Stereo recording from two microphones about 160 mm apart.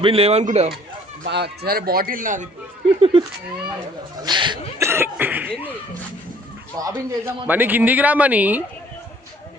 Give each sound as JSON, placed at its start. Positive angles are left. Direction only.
{"t": 0.0, "sound": "speech", "side_deg": -35}
{"t": 1.2, "sound": "speech", "side_deg": -90}
{"t": 3.0, "sound": "cat", "side_deg": -30}
{"t": 4.2, "sound": "a man's voice", "side_deg": -30}
{"t": 4.8, "sound": "speech", "side_deg": -15}
{"t": 6.7, "sound": "a man's voice", "side_deg": -20}
{"t": 7.4, "sound": "speech", "side_deg": -10}